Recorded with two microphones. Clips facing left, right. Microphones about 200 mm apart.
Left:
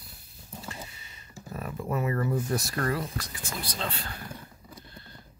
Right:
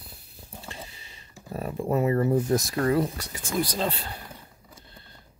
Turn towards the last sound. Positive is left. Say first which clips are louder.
# right 8 dB
turn(degrees=-40)  # may be behind; listen again after turning